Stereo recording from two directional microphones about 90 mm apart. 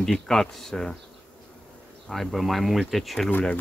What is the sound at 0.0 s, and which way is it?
Speech, 5° left (ahead or behind).